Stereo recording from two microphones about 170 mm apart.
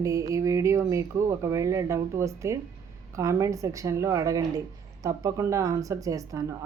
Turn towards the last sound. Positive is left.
turn(degrees=-20)  # may be behind; listen again after turning